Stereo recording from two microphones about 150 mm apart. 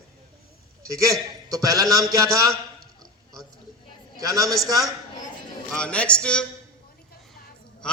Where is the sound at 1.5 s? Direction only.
25° right (ahead or behind).